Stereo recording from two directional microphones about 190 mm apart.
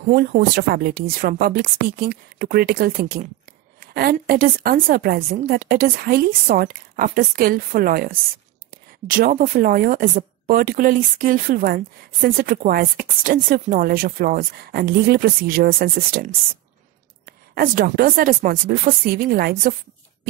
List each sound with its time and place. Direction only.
0.4 s speech: 55° right (ahead or behind)
17.6 s speech: 50° right (ahead or behind)